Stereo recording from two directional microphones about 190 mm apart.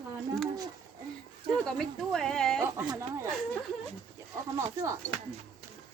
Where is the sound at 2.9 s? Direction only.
15° right (ahead or behind).